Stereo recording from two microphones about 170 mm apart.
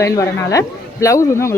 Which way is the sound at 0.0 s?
15° left (ahead or behind).